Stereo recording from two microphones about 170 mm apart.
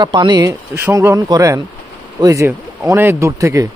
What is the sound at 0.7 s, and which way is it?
Speech, 15° right (ahead or behind).